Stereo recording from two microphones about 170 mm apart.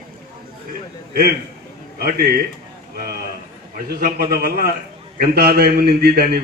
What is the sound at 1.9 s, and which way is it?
Speech, 60° right (ahead or behind).